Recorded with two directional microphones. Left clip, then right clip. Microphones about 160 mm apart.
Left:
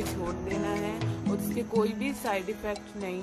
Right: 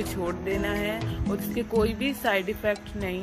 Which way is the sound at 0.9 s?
Centre (ahead or behind).